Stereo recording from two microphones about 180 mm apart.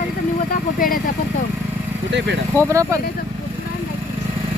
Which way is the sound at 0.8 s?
55° left (ahead or behind).